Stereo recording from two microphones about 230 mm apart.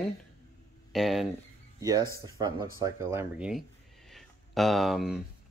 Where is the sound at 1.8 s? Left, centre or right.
Centre.